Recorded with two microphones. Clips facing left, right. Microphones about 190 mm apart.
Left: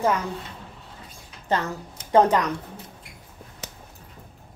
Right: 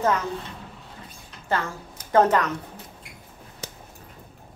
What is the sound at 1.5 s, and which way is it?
A woman's voice, 20° left (ahead or behind).